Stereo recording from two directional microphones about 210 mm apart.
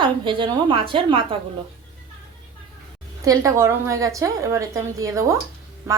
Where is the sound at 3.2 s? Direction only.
15° right (ahead or behind).